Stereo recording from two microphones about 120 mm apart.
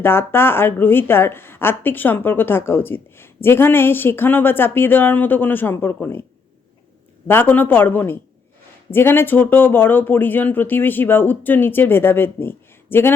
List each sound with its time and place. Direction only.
0.0 s a woman's voice: 20° left (ahead or behind)
7.3 s a woman's voice: 15° left (ahead or behind)